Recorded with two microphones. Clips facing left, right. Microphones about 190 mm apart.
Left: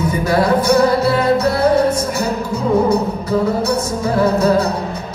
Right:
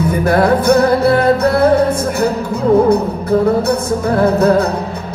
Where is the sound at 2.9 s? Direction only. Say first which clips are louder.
Right 4 dB; 55° right (ahead or behind).